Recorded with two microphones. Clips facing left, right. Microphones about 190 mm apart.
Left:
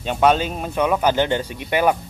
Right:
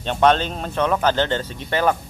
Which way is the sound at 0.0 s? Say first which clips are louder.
Even; 10° left (ahead or behind).